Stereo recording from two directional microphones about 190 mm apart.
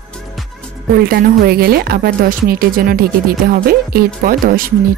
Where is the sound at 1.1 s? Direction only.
55° right (ahead or behind).